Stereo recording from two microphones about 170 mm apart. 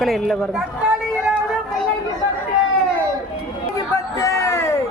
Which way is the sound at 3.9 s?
20° left (ahead or behind).